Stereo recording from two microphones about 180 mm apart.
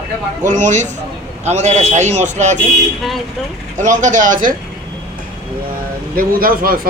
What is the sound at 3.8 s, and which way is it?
Speech, 45° right (ahead or behind).